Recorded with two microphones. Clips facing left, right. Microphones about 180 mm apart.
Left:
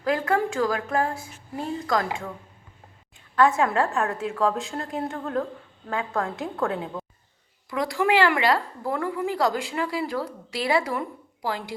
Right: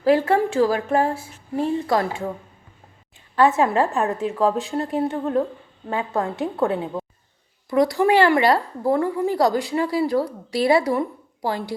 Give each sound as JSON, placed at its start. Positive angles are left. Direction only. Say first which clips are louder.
{"t": 0.0, "sound": "a woman's voice", "louder": "right 6 dB", "side_deg": -30}
{"t": 3.3, "sound": "a woman's voice", "louder": "right 3 dB", "side_deg": -20}
{"t": 7.7, "sound": "a woman's voice", "louder": "right 6 dB", "side_deg": -40}